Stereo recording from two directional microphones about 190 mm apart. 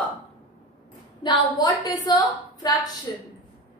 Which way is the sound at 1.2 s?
20° left (ahead or behind).